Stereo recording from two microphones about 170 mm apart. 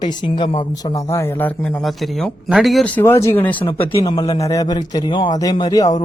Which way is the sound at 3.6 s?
30° left (ahead or behind).